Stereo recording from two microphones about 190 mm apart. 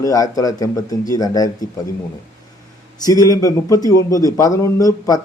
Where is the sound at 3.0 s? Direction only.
20° left (ahead or behind).